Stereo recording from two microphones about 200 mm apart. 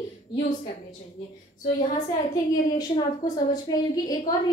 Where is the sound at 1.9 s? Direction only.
20° left (ahead or behind).